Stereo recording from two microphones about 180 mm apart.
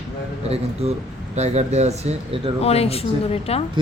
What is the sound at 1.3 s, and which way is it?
Speech, 40° right (ahead or behind).